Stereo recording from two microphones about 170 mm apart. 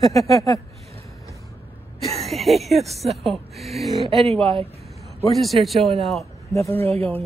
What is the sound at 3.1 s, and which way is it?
Speech, centre (ahead or behind).